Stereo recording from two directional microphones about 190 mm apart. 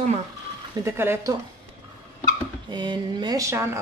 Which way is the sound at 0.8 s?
15° right (ahead or behind).